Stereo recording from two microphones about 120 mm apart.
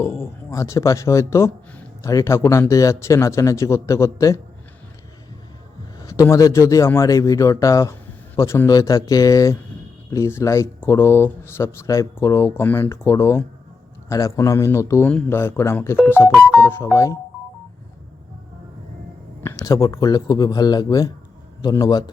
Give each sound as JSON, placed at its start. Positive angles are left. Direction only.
{"t": 0.0, "sound": "speech", "side_deg": 20}
{"t": 6.0, "sound": "speech", "side_deg": 25}
{"t": 19.4, "sound": "speech", "side_deg": 25}